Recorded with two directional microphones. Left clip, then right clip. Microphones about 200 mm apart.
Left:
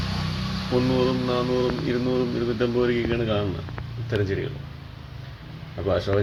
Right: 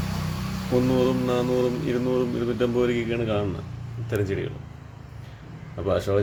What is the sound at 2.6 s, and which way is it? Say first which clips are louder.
Speech: even; 5° right (ahead or behind).